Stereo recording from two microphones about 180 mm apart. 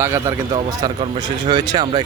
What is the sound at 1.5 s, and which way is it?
Speech, 25° right (ahead or behind).